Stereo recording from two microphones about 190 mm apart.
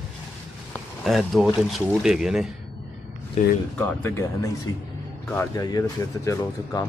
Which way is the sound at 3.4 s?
35° left (ahead or behind).